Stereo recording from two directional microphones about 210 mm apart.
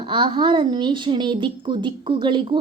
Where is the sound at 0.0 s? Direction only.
25° right (ahead or behind).